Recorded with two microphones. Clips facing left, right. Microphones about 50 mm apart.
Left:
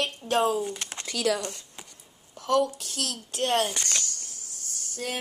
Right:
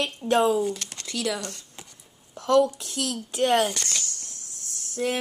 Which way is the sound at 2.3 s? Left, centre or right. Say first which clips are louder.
Right 4 dB; right.